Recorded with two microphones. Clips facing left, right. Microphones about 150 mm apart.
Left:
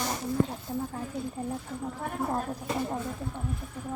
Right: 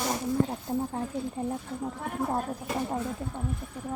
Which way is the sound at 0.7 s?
50° right (ahead or behind).